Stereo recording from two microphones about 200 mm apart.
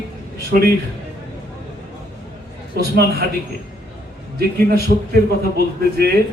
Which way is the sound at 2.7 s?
50° right (ahead or behind).